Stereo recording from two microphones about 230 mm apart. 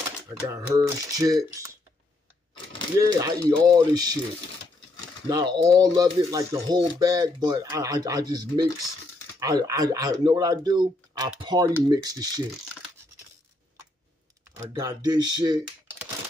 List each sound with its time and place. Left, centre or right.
0.4 s speech: centre
3.0 s speech: centre
5.3 s speech: centre
14.7 s speech: centre